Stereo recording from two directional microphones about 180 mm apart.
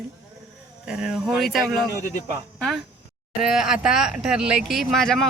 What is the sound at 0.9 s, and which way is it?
Speech, 5° right (ahead or behind).